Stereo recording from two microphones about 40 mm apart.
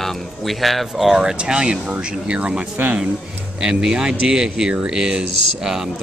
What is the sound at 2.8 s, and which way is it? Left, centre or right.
Speech, right.